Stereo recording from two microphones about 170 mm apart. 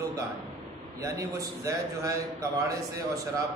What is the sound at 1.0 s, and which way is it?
A man's voice, 20° right (ahead or behind).